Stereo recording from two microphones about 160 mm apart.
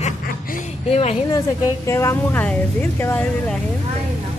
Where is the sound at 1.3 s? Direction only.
20° left (ahead or behind).